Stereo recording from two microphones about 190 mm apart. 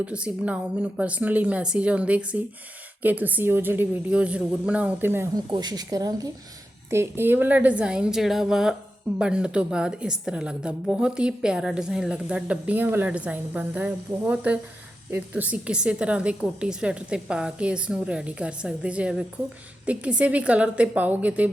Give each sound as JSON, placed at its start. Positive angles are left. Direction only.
{"t": 0.0, "sound": "a woman's voice", "side_deg": -5}